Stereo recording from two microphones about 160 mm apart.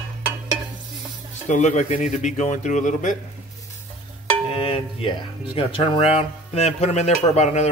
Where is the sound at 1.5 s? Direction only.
50° left (ahead or behind).